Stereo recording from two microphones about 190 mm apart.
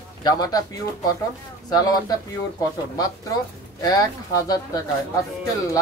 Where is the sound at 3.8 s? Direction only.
20° left (ahead or behind).